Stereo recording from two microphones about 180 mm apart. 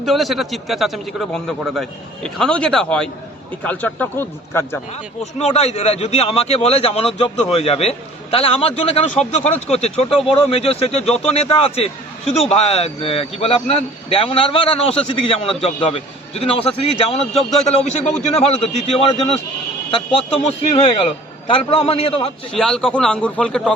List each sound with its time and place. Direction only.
0.0 s a man's voice: centre (ahead or behind)
5.2 s a man's voice: 35° left (ahead or behind)
22.5 s a man's voice: 5° left (ahead or behind)